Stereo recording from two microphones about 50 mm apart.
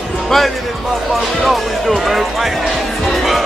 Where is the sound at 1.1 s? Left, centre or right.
Centre.